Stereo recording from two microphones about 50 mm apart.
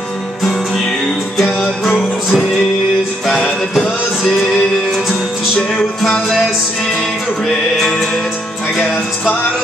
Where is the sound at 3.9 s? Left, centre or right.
Centre.